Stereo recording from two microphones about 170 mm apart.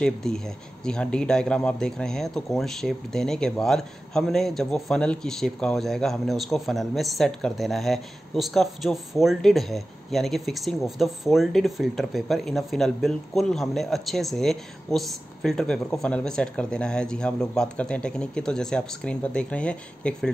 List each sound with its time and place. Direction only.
0.0 s speech: 5° left (ahead or behind)